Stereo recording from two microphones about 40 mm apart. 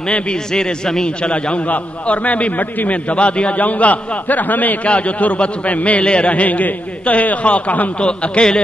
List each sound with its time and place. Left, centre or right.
0.3 s speech: centre
1.7 s a man's voice: left
8.0 s speech: left